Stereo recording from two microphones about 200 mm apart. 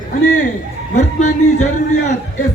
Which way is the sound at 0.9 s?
35° left (ahead or behind).